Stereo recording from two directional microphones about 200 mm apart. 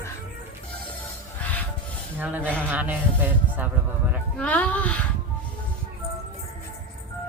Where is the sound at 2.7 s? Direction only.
10° right (ahead or behind).